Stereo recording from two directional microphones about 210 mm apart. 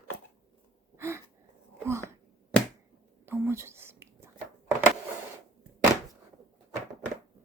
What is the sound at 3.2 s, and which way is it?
Whispering, 10° right (ahead or behind).